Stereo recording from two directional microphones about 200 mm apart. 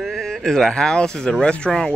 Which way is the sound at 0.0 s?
Centre (ahead or behind).